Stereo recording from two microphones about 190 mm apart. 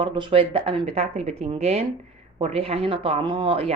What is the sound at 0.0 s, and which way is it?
Speech, 25° right (ahead or behind).